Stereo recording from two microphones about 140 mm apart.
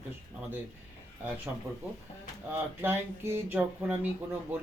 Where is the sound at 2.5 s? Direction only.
15° right (ahead or behind).